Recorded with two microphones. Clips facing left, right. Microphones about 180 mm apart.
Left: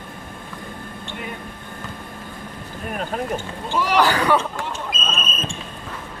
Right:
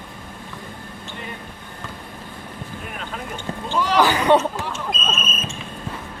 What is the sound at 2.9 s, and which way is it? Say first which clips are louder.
Boat: left 8 dB; 45° left (ahead or behind).